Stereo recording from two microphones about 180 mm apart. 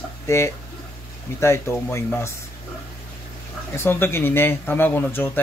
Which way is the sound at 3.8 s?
10° left (ahead or behind).